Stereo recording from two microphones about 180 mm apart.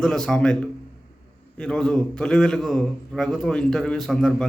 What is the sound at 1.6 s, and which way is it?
A man's voice, 5° left (ahead or behind).